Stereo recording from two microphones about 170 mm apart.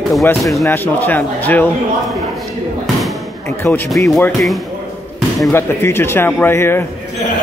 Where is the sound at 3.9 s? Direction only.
Centre (ahead or behind).